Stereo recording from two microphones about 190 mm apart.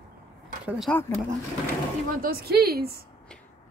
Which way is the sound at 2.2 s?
55° right (ahead or behind).